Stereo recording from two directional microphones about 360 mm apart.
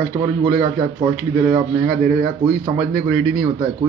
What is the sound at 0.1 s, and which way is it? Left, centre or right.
A man's voice, centre.